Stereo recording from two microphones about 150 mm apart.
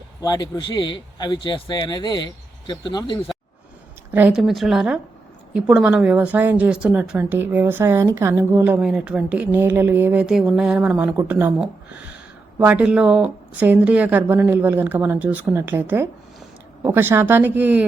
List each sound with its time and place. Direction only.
0.2 s a man's voice: 25° left (ahead or behind)
4.3 s a woman's voice: centre (ahead or behind)